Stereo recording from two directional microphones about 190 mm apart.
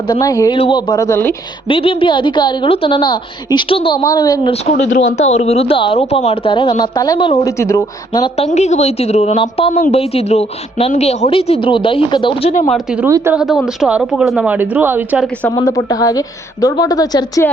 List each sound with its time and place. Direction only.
0.1 s a woman's voice: 20° left (ahead or behind)
1.6 s a woman's voice: 30° left (ahead or behind)
5.1 s a woman's voice: 35° left (ahead or behind); by 8.3 s 20° left (ahead or behind)
8.4 s a woman's voice: 35° left (ahead or behind)
12.7 s a woman's voice: 5° right (ahead or behind)
13.1 s a woman's voice: 15° right (ahead or behind)
13.3 s a woman's voice: centre (ahead or behind)
15.5 s a woman's voice: 20° left (ahead or behind)